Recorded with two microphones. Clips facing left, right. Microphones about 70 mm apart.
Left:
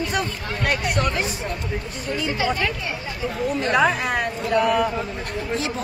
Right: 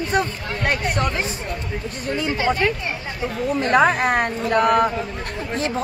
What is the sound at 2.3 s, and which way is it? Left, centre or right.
A woman's voice, right.